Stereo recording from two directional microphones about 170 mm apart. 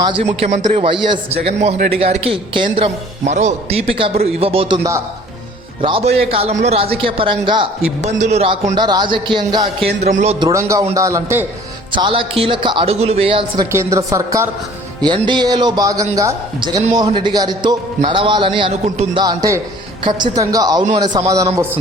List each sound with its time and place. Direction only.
0.0 s a man's voice: 35° right (ahead or behind)
8.0 s speech: 40° right (ahead or behind); by 9.6 s 25° right (ahead or behind)
9.8 s a man's voice: 40° right (ahead or behind)
10.4 s a woman's voice: 20° right (ahead or behind)
11.9 s a man's voice: 30° right (ahead or behind)
13.7 s a woman's voice: 20° right (ahead or behind); by 19.2 s 35° right (ahead or behind)
19.2 s speech: 20° right (ahead or behind)